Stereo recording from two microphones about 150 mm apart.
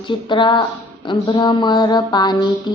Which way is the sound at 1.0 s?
30° left (ahead or behind).